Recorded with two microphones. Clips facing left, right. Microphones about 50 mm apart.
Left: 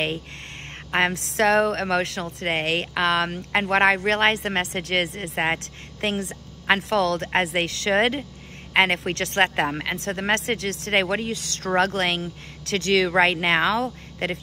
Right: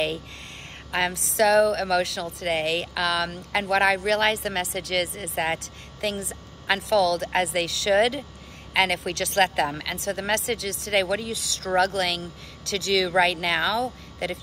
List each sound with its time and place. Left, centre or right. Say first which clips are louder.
0.9 s speech: left 2 dB; left